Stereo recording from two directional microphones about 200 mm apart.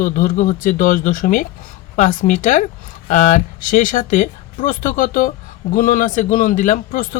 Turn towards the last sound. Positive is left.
turn(degrees=45)  # may be behind; listen again after turning